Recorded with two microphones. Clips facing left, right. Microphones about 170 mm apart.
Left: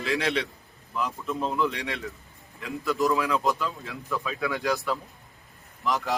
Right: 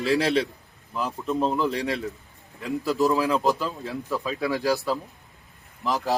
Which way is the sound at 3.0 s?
35° right (ahead or behind).